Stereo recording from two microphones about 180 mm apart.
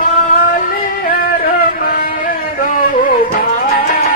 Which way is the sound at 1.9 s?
50° left (ahead or behind).